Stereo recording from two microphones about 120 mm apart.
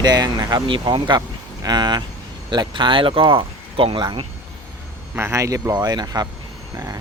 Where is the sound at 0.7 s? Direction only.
45° right (ahead or behind).